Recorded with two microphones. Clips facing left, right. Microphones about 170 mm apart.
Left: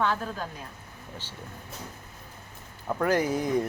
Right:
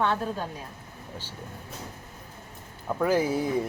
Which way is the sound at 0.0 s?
25° right (ahead or behind).